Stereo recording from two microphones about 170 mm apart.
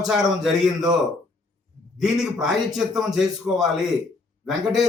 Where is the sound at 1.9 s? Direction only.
5° right (ahead or behind).